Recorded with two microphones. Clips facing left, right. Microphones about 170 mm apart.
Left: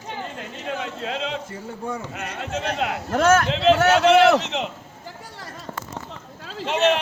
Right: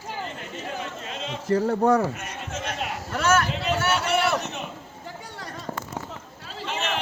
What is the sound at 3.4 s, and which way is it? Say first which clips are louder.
A man's voice: left 8 dB; 90° left.